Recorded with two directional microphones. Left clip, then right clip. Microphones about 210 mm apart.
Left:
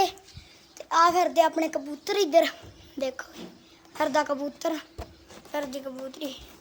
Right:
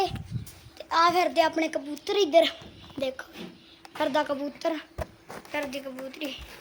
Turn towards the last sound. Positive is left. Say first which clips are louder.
# even
turn(degrees=5)  # may be behind; listen again after turning